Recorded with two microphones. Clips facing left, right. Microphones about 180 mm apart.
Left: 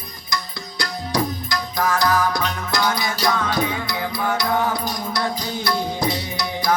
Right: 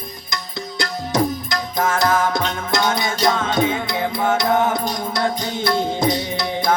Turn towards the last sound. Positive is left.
turn(degrees=-25)  # may be behind; listen again after turning